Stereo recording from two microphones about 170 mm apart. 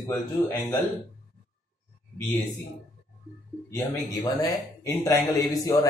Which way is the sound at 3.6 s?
20° left (ahead or behind).